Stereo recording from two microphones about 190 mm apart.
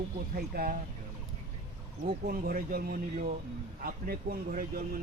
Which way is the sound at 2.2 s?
50° right (ahead or behind).